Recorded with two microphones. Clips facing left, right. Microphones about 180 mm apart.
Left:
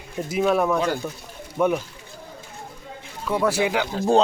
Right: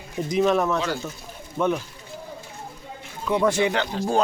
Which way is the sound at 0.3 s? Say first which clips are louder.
Even; 5° left (ahead or behind).